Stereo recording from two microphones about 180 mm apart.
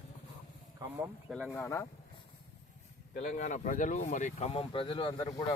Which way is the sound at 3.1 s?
45° left (ahead or behind).